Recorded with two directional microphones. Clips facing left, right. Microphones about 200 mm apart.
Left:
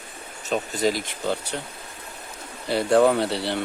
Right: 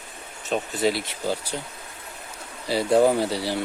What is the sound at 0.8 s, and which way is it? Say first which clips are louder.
Speech: right 1 dB; 40° left (ahead or behind).